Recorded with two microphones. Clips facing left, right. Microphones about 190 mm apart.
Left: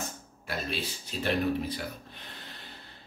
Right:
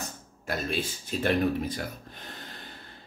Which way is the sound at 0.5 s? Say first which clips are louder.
Right 4 dB; 50° right (ahead or behind).